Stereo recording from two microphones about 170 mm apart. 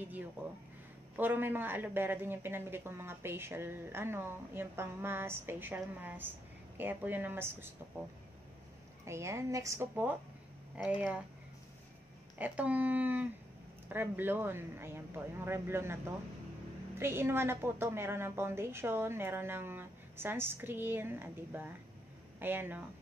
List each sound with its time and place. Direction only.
1.1 s a man's voice: 10° right (ahead or behind)
9.0 s a man's voice: 15° right (ahead or behind)
12.4 s a man's voice: 10° right (ahead or behind)
17.0 s a man's voice: 15° right (ahead or behind)